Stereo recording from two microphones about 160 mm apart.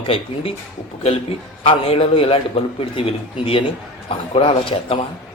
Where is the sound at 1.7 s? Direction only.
35° left (ahead or behind).